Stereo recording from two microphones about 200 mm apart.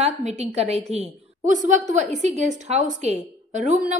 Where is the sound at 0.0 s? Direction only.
35° right (ahead or behind).